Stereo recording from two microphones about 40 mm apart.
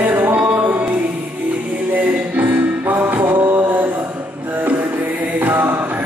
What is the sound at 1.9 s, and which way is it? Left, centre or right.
Music, right.